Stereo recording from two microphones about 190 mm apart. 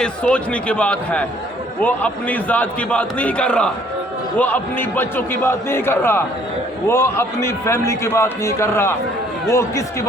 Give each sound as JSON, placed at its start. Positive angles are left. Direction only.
{"t": 0.0, "sound": "a man's voice", "side_deg": 5}